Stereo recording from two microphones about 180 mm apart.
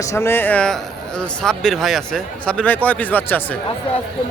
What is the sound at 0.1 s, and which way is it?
Speech, 15° left (ahead or behind).